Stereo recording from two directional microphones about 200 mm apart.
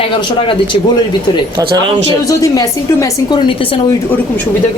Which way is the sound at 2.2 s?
15° left (ahead or behind).